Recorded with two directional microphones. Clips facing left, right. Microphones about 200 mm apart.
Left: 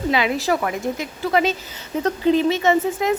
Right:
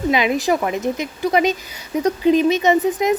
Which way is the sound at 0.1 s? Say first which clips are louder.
Right 2 dB; 15° right (ahead or behind).